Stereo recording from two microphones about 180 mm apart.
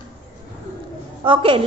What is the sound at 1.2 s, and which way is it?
Speech, 30° right (ahead or behind).